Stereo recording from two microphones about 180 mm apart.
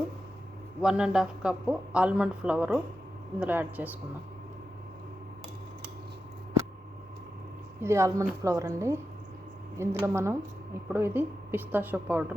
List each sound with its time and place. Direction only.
0.8 s a man's voice: 5° right (ahead or behind)
7.8 s a woman's voice: 15° right (ahead or behind)